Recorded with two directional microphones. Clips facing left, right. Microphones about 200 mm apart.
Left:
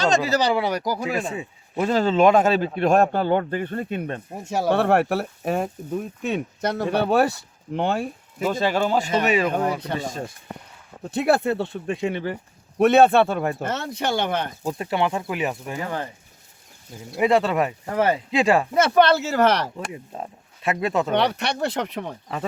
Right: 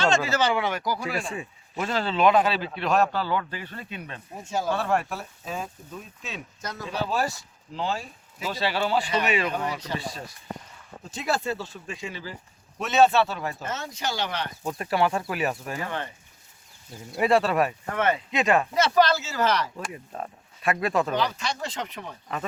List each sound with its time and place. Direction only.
0.3 s speech: 35° left (ahead or behind)
1.3 s speech: 30° left (ahead or behind); by 4.5 s 50° left (ahead or behind)
4.5 s speech: 65° left (ahead or behind); by 10.3 s 45° left (ahead or behind)
11.0 s speech: 60° left (ahead or behind)
14.8 s speech: 25° left (ahead or behind)
17.2 s speech: 20° left (ahead or behind)
17.9 s speech: 35° left (ahead or behind)
18.7 s speech: 50° left (ahead or behind)
19.9 s speech: 20° left (ahead or behind)
21.1 s speech: 70° left (ahead or behind)